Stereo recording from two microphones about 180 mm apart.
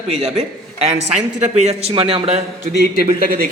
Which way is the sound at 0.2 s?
35° right (ahead or behind).